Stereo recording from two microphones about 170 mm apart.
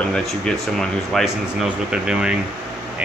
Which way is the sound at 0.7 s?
Centre (ahead or behind).